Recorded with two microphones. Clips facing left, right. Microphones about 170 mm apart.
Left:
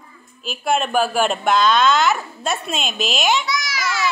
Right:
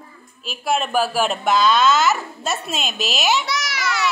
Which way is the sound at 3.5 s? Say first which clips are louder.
Left 1 dB; 70° right (ahead or behind).